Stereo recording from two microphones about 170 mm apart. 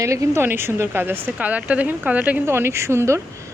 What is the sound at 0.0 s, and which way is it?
Speech, 20° right (ahead or behind).